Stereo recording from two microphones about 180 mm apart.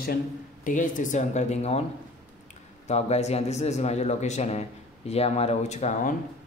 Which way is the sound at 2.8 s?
35° left (ahead or behind).